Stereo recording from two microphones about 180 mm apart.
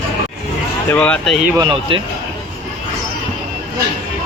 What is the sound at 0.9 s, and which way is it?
Speech, 5° left (ahead or behind).